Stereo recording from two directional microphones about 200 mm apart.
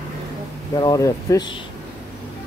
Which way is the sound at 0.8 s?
15° left (ahead or behind).